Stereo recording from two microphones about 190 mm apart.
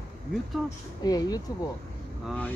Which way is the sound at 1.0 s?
20° left (ahead or behind).